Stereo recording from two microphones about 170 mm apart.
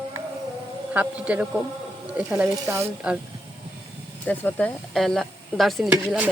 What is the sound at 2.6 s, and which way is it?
Speech, 15° right (ahead or behind).